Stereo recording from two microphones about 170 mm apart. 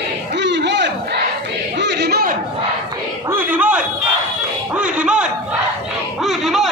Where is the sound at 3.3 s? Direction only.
10° right (ahead or behind).